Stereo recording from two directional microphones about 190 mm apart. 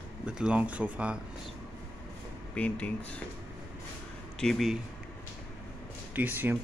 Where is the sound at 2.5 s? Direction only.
5° left (ahead or behind).